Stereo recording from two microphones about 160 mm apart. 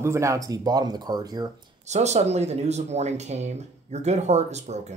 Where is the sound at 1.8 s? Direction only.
45° right (ahead or behind).